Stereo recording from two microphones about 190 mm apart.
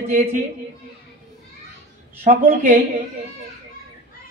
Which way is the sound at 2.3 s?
40° right (ahead or behind).